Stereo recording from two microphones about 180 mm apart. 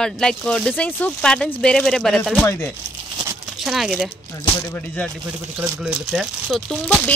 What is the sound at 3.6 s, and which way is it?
Speech, centre (ahead or behind).